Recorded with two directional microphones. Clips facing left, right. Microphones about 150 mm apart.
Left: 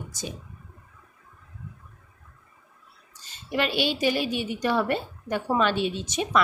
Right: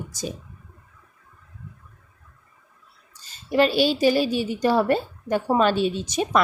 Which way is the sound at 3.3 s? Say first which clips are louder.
Right 7 dB; 35° right (ahead or behind).